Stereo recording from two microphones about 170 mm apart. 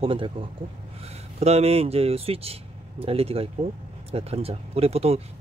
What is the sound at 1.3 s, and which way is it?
Speech, 40° right (ahead or behind).